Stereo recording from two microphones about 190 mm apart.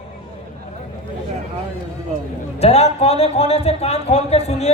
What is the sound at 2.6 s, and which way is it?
A man's voice, 35° left (ahead or behind).